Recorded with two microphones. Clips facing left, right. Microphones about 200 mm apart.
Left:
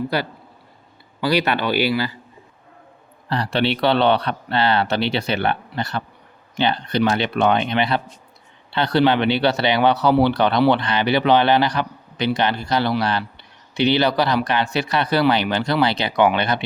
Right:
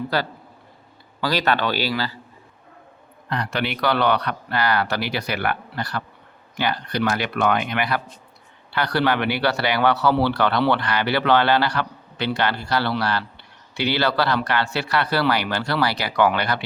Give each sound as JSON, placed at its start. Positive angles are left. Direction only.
{"t": 1.2, "sound": "a man's voice", "side_deg": 15}
{"t": 3.2, "sound": "speech", "side_deg": 30}